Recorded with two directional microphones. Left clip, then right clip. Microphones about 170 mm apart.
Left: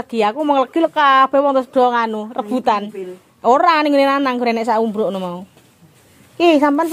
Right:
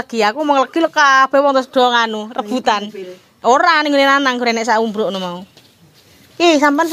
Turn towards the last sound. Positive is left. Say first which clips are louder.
# right 1 dB
turn(degrees=15)  # may be behind; listen again after turning